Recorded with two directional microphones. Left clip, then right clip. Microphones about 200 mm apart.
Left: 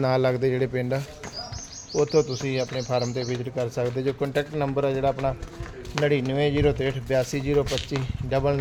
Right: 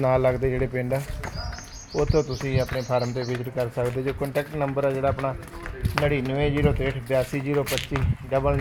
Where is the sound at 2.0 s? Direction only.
10° left (ahead or behind).